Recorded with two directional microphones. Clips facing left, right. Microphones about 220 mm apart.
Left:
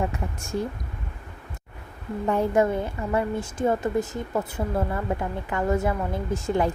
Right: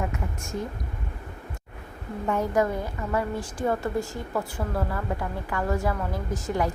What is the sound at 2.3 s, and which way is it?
A woman's voice, 30° left (ahead or behind).